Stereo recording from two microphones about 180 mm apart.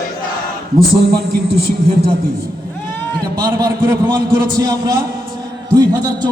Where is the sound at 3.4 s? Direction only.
20° right (ahead or behind).